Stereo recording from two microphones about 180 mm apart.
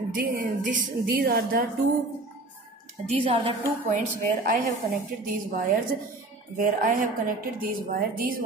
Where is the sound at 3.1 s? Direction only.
30° right (ahead or behind).